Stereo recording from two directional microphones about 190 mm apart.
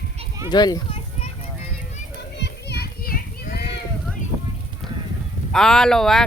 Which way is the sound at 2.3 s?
60° left (ahead or behind).